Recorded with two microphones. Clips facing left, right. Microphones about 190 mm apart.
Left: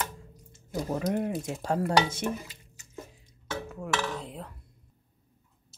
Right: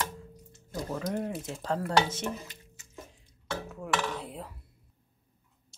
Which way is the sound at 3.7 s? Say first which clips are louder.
Even; centre (ahead or behind).